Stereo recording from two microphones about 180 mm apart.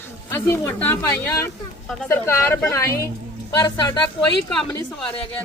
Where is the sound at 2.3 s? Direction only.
15° left (ahead or behind).